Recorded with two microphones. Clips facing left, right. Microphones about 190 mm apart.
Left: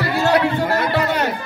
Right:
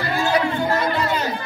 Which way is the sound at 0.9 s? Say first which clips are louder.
Left 3 dB; 65° left (ahead or behind).